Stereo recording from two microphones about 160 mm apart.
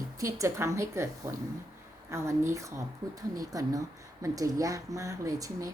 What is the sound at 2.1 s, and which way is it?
A woman's voice, 15° right (ahead or behind).